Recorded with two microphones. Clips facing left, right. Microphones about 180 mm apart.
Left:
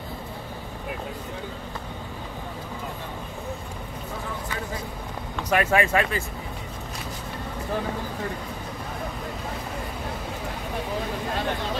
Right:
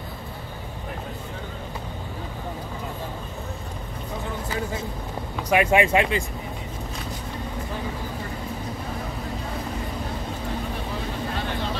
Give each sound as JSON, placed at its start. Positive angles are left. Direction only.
{"t": 5.5, "sound": "speech", "side_deg": -15}